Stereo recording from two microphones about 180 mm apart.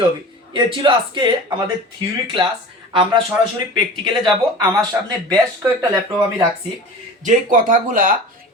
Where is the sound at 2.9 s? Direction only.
30° right (ahead or behind).